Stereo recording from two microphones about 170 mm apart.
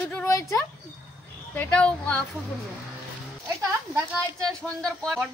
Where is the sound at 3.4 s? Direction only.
20° right (ahead or behind).